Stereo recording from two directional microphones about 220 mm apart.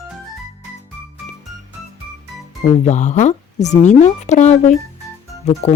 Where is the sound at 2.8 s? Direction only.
30° left (ahead or behind).